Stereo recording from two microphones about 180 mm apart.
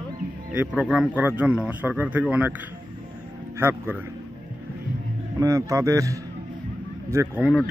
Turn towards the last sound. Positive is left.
turn(degrees=-15)  # may be behind; listen again after turning